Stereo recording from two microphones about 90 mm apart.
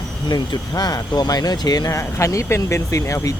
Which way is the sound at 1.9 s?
35° left (ahead or behind).